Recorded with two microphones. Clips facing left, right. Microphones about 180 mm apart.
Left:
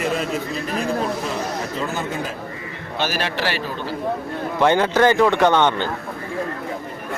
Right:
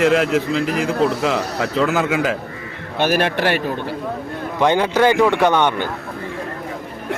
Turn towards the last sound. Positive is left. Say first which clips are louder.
# even
turn(degrees=-10)  # may be behind; listen again after turning